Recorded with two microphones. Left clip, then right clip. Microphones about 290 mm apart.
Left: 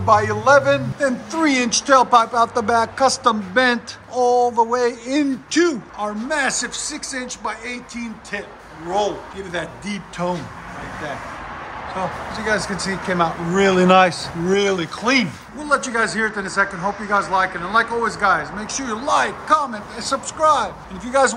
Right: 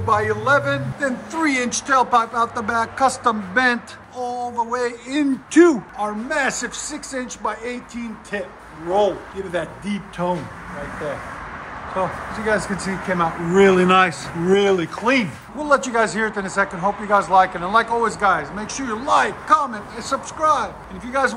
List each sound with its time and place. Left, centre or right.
0.0 s a man's voice: centre
5.5 s speech: centre
5.9 s speech: centre
12.3 s speech: centre